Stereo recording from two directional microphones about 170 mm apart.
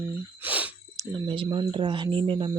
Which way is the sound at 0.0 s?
10° right (ahead or behind).